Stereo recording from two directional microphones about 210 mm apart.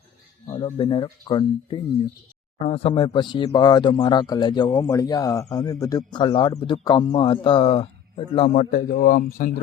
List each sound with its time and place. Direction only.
0.4 s speech: 20° left (ahead or behind)
8.7 s speech: 40° left (ahead or behind)